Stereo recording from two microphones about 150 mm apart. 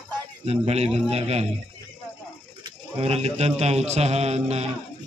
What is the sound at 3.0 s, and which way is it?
Speech, 45° right (ahead or behind).